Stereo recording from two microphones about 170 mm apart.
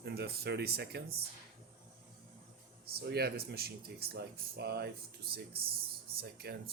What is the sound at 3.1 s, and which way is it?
Speech, 70° right (ahead or behind).